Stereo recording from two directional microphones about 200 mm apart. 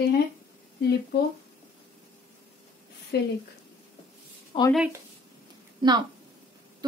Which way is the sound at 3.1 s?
55° left (ahead or behind).